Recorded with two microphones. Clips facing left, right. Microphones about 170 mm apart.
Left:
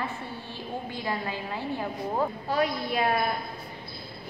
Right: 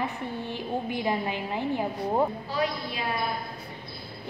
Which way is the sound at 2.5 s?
55° left (ahead or behind).